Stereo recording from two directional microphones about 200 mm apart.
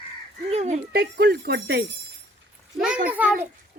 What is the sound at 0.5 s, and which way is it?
Speech, 35° right (ahead or behind).